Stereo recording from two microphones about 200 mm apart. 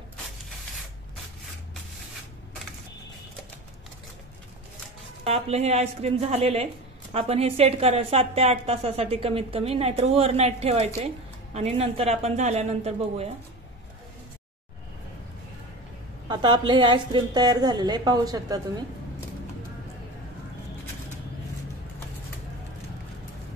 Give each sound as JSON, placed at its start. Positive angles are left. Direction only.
{"t": 5.2, "sound": "speech", "side_deg": -30}
{"t": 16.3, "sound": "a woman's voice", "side_deg": -20}